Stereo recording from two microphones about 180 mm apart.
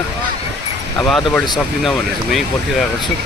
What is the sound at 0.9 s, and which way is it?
Speech, 5° left (ahead or behind).